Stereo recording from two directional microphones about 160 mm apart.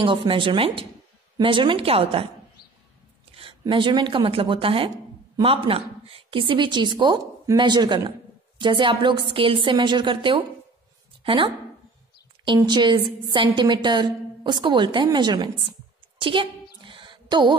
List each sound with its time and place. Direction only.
0.0 s a woman's voice: 30° right (ahead or behind)
3.3 s a woman's voice: 30° right (ahead or behind)
16.8 s a sound: 30° right (ahead or behind)